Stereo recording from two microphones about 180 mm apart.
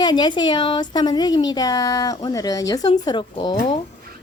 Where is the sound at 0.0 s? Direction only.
25° left (ahead or behind).